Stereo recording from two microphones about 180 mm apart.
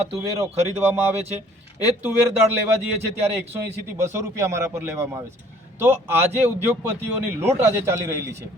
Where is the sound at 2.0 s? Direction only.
10° right (ahead or behind).